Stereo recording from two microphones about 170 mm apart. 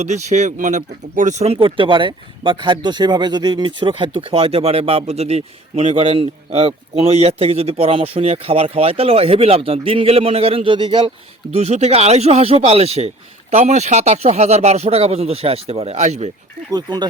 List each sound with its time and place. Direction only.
0.0 s speech: 40° right (ahead or behind)
16.7 s speech: 25° right (ahead or behind)